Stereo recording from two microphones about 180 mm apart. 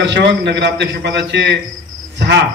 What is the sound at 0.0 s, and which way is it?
Speech, 70° right (ahead or behind).